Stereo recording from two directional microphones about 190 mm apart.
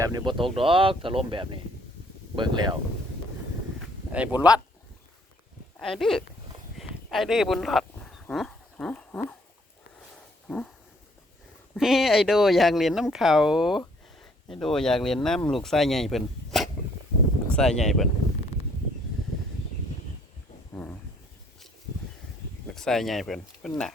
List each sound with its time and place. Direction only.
0.0 s speech: 20° right (ahead or behind)
4.1 s speech: 10° right (ahead or behind)
5.8 s speech: centre (ahead or behind)
8.3 s a sound: centre (ahead or behind)
11.7 s speech: centre (ahead or behind)
22.7 s speech: centre (ahead or behind)